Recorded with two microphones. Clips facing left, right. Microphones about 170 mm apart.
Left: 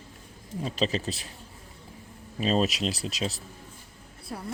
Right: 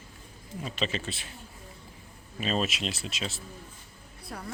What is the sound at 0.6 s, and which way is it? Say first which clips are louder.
Speech: left 4 dB; 35° left (ahead or behind).